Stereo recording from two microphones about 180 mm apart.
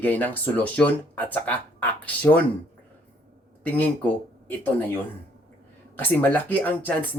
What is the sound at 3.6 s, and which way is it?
Speech, 10° left (ahead or behind).